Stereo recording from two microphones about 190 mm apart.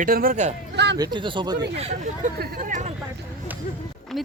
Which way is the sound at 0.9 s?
20° right (ahead or behind).